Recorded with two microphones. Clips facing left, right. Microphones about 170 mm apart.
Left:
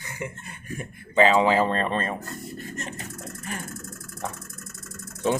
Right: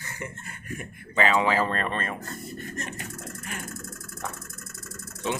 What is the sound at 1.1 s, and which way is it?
Speech, 30° left (ahead or behind).